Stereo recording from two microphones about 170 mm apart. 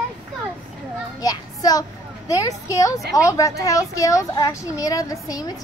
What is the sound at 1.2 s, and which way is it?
A child's voice, 20° left (ahead or behind).